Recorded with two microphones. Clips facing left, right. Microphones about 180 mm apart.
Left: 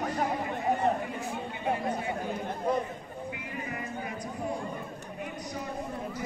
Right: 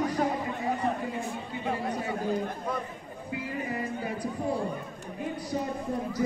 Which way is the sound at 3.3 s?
30° right (ahead or behind).